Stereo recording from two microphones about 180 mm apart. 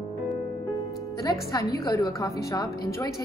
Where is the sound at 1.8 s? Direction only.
20° left (ahead or behind).